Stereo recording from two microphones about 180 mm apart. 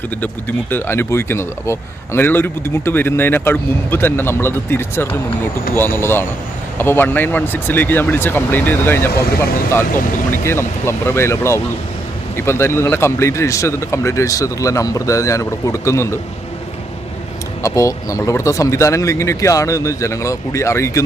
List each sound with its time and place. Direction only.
0.2 s speech: 10° left (ahead or behind)
10.4 s speech: 15° left (ahead or behind)
17.6 s speech: 15° left (ahead or behind)